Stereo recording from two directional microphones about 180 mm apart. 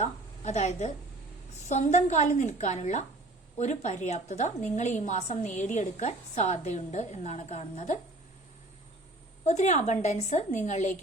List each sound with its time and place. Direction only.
0.0 s a woman's voice: 40° left (ahead or behind)
9.5 s a woman's voice: 40° left (ahead or behind)